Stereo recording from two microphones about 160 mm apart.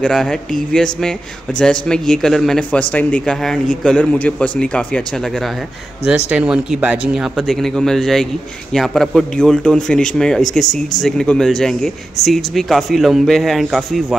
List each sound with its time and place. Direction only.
0.0 s a man's voice: 5° left (ahead or behind)
1.6 s a man's voice: 5° left (ahead or behind)
6.0 s a man's voice: 10° right (ahead or behind)